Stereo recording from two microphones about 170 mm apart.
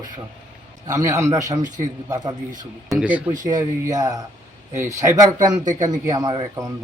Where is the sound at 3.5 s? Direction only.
20° right (ahead or behind).